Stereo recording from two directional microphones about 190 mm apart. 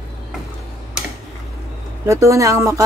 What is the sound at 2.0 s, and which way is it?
Speech, 15° right (ahead or behind).